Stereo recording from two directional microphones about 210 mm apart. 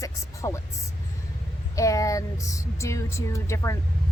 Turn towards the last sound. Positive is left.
turn(degrees=15)  # may be behind; listen again after turning